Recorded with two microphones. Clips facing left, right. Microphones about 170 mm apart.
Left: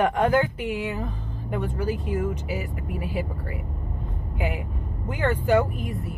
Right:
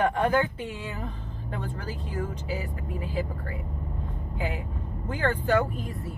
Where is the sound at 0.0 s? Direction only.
15° left (ahead or behind).